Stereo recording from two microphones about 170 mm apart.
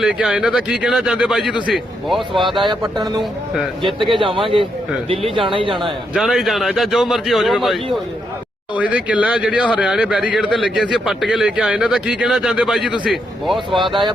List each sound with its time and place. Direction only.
0.0 s speech: 5° right (ahead or behind)
2.6 s speech: 25° right (ahead or behind)
4.1 s speech: 30° right (ahead or behind)
5.7 s speech: centre (ahead or behind)